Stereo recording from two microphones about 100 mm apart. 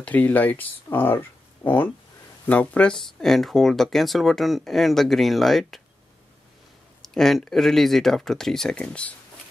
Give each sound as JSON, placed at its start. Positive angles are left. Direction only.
{"t": 0.0, "sound": "speech", "side_deg": 15}
{"t": 7.0, "sound": "speech", "side_deg": 5}